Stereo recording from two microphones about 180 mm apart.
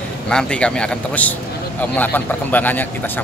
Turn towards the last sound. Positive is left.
turn(degrees=10)  # may be behind; listen again after turning